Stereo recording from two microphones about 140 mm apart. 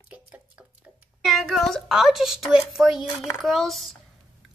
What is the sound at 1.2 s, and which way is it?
A woman's voice, centre (ahead or behind).